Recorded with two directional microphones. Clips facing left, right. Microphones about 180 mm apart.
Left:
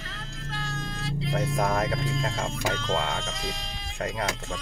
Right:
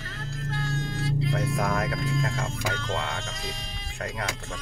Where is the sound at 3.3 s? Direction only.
90° left.